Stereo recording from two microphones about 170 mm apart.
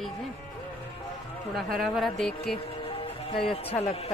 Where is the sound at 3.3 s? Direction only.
35° left (ahead or behind).